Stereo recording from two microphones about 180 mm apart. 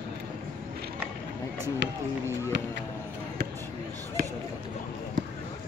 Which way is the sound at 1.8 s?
85° right.